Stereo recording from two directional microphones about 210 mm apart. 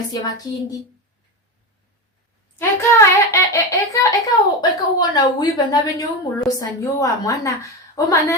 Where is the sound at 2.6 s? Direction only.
15° left (ahead or behind).